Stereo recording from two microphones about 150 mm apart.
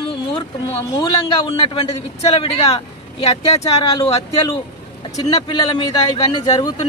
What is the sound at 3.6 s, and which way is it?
A man's voice, 25° left (ahead or behind).